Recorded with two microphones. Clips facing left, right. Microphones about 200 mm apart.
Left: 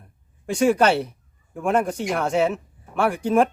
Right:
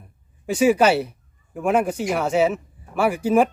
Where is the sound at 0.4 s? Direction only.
5° right (ahead or behind).